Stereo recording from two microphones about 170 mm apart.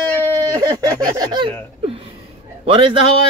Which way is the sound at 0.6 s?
20° right (ahead or behind).